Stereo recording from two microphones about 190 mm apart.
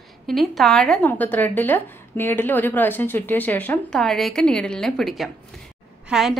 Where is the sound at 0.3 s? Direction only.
Centre (ahead or behind).